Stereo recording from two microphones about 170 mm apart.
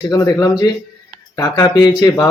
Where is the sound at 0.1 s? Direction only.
20° left (ahead or behind).